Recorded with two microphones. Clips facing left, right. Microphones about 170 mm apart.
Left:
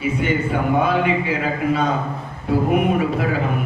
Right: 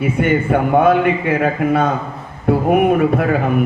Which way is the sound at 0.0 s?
55° right (ahead or behind).